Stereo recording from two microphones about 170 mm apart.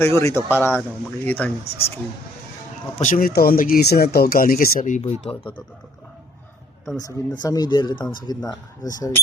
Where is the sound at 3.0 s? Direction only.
55° left (ahead or behind).